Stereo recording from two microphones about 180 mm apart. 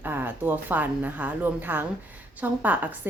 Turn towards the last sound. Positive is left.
turn(degrees=-10)  # may be behind; listen again after turning